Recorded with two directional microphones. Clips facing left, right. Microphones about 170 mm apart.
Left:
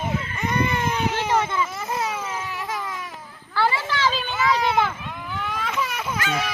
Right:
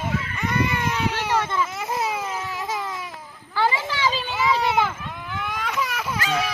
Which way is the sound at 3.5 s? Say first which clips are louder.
Even; 15° right (ahead or behind).